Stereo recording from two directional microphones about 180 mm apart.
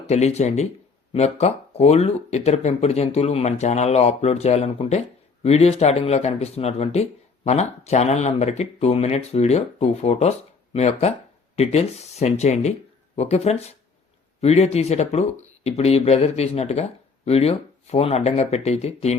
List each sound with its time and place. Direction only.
0.1 s speech: 35° left (ahead or behind)